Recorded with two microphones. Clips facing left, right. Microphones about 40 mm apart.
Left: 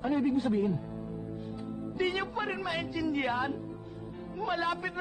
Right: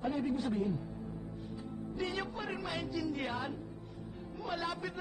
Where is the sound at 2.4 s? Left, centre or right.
Left.